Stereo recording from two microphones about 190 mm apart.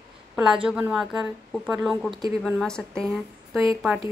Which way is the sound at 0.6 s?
5° right (ahead or behind).